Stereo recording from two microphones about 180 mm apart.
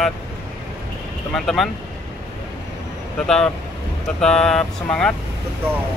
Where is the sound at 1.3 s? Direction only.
Centre (ahead or behind).